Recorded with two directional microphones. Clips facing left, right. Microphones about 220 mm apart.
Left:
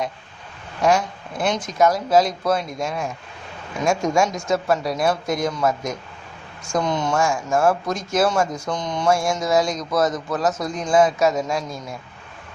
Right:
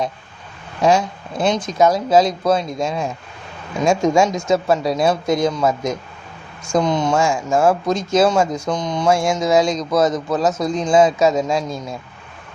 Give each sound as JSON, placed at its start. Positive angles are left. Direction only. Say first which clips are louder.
{"t": 0.8, "sound": "speech", "louder": "right 3 dB", "side_deg": -25}